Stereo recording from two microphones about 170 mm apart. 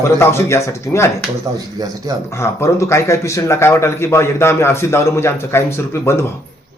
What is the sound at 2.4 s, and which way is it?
Speech, 15° left (ahead or behind).